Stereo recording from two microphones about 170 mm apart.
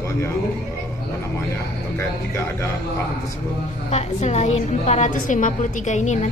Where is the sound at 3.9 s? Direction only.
40° left (ahead or behind).